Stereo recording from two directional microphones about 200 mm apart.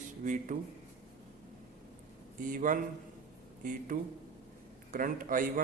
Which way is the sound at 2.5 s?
40° right (ahead or behind).